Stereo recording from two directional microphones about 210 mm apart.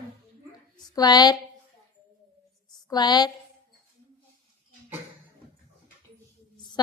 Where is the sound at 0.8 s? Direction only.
20° left (ahead or behind).